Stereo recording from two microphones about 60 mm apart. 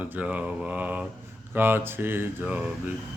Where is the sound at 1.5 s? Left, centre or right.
Right.